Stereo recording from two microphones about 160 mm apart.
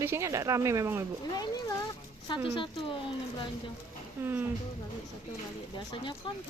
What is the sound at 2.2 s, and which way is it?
Speech, 30° left (ahead or behind).